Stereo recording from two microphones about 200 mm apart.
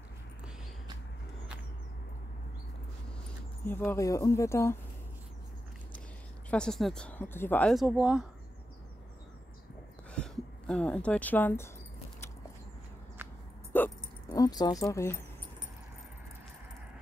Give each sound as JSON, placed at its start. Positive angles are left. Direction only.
{"t": 3.6, "sound": "speech", "side_deg": 10}
{"t": 6.5, "sound": "speech", "side_deg": 5}
{"t": 10.1, "sound": "speech", "side_deg": 5}
{"t": 13.2, "sound": "a sound", "side_deg": -10}
{"t": 13.7, "sound": "dog", "side_deg": 15}